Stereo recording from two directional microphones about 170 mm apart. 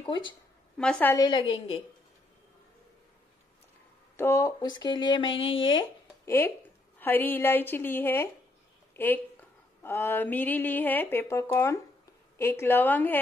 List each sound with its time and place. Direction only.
0.7 s a woman's voice: 5° left (ahead or behind)
1.1 s speech: 25° left (ahead or behind)
4.2 s speech: 15° left (ahead or behind)
6.2 s a woman's voice: 15° left (ahead or behind)